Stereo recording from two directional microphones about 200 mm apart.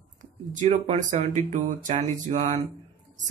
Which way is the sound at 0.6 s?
35° right (ahead or behind).